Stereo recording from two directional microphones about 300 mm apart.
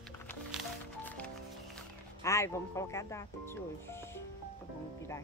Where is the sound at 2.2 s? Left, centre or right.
Centre.